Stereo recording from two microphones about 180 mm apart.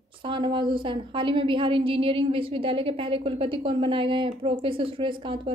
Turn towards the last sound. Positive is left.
turn(degrees=-25)  # may be behind; listen again after turning